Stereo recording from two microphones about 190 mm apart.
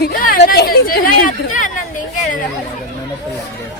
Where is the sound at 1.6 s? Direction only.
45° left (ahead or behind).